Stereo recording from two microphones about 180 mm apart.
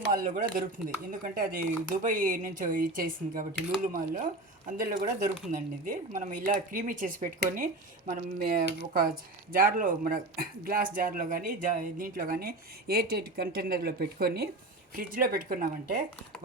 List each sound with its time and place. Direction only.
0.0 s speech: 50° right (ahead or behind)